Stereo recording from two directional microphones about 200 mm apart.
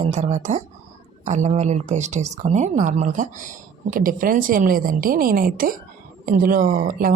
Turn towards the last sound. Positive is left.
turn(degrees=-45)  # may be behind; listen again after turning